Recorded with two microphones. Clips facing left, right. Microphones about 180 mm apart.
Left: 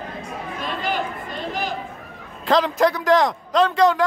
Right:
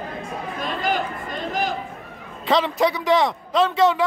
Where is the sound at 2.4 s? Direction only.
Centre (ahead or behind).